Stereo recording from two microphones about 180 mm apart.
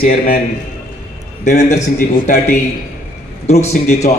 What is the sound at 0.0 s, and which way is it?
Speech, 50° left (ahead or behind).